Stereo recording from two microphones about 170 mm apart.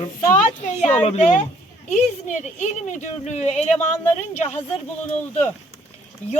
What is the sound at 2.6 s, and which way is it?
A woman's voice, 45° left (ahead or behind).